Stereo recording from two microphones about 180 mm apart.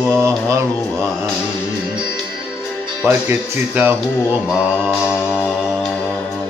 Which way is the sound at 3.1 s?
10° right (ahead or behind).